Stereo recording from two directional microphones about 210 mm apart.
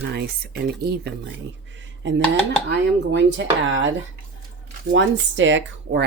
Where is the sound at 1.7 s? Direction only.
60° right (ahead or behind).